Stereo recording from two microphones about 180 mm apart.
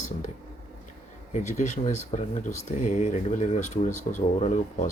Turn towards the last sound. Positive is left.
turn(degrees=40)  # may be behind; listen again after turning